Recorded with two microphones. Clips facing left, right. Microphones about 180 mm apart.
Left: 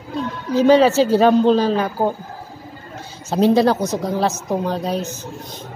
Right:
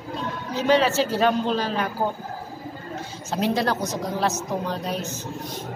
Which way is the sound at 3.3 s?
30° left (ahead or behind).